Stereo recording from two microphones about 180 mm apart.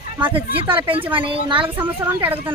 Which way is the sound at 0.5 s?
30° right (ahead or behind).